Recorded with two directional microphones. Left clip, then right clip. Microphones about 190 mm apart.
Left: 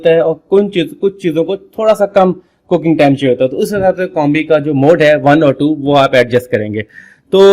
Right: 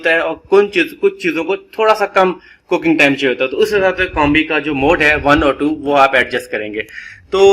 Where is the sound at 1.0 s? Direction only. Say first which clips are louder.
Left 2 dB; 40° left (ahead or behind).